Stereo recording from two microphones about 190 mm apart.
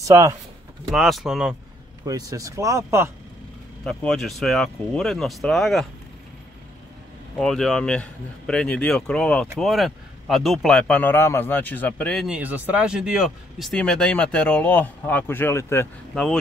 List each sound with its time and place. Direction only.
0.0 s speech: 15° right (ahead or behind)
0.8 s speech: centre (ahead or behind)
2.0 s speech: 20° right (ahead or behind)
3.8 s speech: 5° left (ahead or behind)
7.3 s speech: 5° left (ahead or behind)